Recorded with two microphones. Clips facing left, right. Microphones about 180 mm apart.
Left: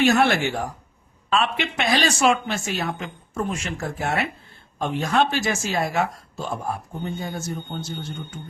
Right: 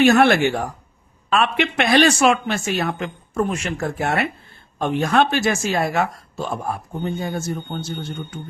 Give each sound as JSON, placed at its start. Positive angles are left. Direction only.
{"t": 0.0, "sound": "speech", "side_deg": -60}